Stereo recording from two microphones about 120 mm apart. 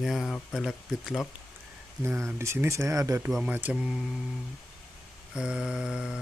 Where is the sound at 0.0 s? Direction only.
Centre (ahead or behind).